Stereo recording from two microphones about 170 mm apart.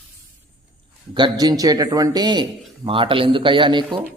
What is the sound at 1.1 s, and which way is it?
A man's voice, 25° right (ahead or behind).